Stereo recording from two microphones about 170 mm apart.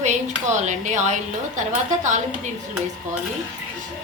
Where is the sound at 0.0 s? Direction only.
45° right (ahead or behind).